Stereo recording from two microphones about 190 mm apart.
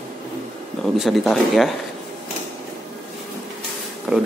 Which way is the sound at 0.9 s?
Centre (ahead or behind).